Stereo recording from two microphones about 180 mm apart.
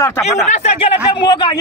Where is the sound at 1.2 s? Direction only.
25° left (ahead or behind).